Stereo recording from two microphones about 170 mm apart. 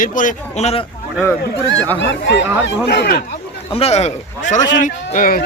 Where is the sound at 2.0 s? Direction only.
90° left; by 3.2 s 70° left (ahead or behind).